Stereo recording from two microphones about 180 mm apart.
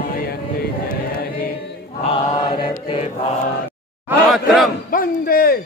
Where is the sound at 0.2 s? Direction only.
60° left (ahead or behind).